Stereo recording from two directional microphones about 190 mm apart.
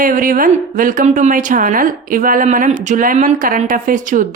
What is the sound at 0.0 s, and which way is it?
A woman's voice, 45° right (ahead or behind).